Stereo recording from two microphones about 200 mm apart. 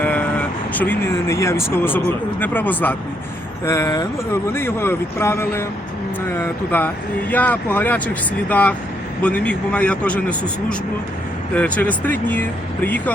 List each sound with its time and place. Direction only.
0.0 s vehicle: 5° left (ahead or behind)
2.4 s speech: 10° left (ahead or behind)
6.7 s speech: 10° left (ahead or behind)